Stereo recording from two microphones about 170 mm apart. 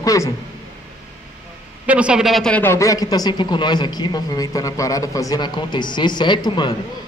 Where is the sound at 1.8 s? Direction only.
5° right (ahead or behind); by 6.7 s 25° left (ahead or behind).